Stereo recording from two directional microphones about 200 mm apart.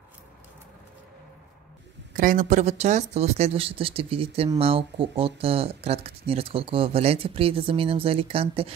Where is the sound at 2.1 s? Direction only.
45° right (ahead or behind).